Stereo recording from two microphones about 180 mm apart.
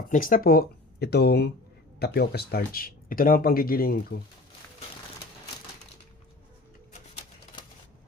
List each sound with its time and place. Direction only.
0.1 s speech: 50° left (ahead or behind)